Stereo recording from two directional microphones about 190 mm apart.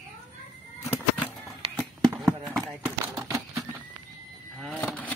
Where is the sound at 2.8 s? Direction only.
15° right (ahead or behind).